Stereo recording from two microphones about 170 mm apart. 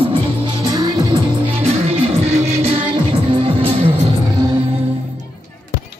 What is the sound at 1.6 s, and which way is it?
Music, 35° right (ahead or behind).